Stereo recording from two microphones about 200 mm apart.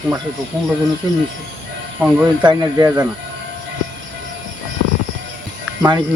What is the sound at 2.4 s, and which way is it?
Speech, 20° right (ahead or behind).